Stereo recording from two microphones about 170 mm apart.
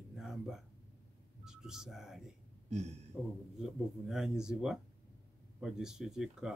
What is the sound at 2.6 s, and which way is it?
Speech, 40° right (ahead or behind).